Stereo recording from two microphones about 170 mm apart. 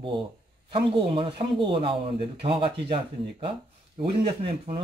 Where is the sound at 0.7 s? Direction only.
30° right (ahead or behind).